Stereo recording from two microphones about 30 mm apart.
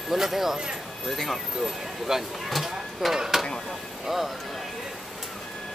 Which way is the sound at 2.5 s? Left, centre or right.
Centre.